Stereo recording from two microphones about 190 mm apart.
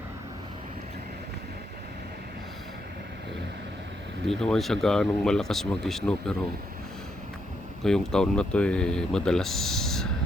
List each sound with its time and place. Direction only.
4.3 s speech: centre (ahead or behind)
7.9 s speech: 5° left (ahead or behind)